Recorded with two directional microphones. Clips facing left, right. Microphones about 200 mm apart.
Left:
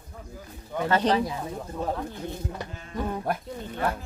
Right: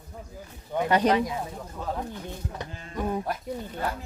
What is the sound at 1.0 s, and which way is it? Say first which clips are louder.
Speech: even; 30° left (ahead or behind).